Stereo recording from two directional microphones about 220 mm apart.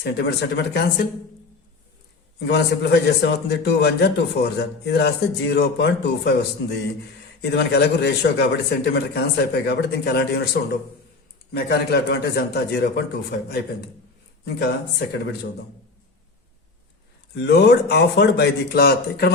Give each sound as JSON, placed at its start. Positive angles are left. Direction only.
{"t": 0.0, "sound": "a man's voice", "side_deg": 50}
{"t": 2.5, "sound": "a man's voice", "side_deg": 50}
{"t": 7.5, "sound": "a man's voice", "side_deg": 50}
{"t": 17.3, "sound": "a man's voice", "side_deg": 50}